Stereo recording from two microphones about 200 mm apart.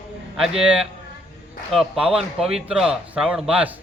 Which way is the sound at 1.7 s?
5° right (ahead or behind).